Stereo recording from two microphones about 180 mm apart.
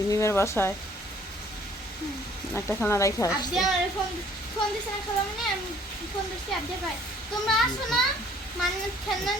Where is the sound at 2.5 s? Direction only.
10° left (ahead or behind).